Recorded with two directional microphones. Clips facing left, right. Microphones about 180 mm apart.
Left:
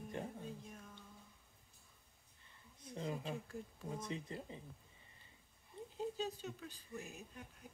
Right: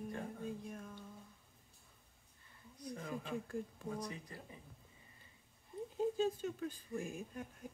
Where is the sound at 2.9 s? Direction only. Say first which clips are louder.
Left 1 dB; 25° left (ahead or behind).